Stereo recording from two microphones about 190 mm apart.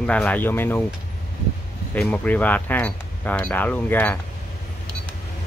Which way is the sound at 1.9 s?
5° left (ahead or behind).